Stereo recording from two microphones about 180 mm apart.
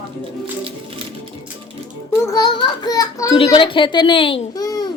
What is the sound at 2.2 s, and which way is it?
A woman's voice, 20° left (ahead or behind).